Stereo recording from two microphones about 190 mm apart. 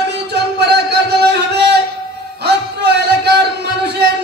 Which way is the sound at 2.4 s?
60° right (ahead or behind).